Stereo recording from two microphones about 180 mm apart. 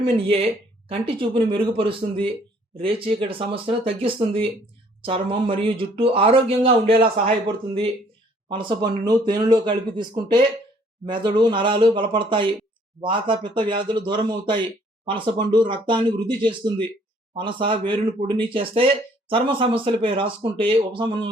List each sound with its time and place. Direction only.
0.0 s a man's voice: 30° right (ahead or behind)
8.4 s speech: 25° right (ahead or behind)